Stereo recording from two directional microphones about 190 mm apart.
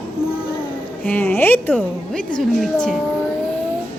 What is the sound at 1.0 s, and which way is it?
A woman's voice, 10° left (ahead or behind).